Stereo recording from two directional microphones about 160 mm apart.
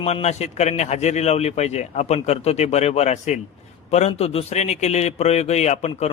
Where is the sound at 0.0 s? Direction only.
40° left (ahead or behind).